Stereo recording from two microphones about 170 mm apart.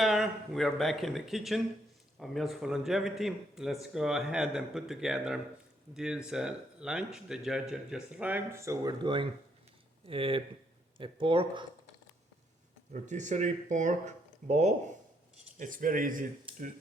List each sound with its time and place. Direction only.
0.0 s speech: centre (ahead or behind); by 11.6 s 30° right (ahead or behind)
12.9 s speech: 45° right (ahead or behind)
16.5 s a sound: 30° right (ahead or behind)